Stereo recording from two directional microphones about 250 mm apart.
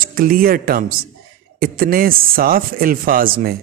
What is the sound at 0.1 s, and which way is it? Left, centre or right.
Speech, right.